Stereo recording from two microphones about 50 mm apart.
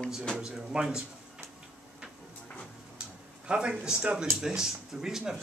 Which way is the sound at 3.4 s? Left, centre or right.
Centre.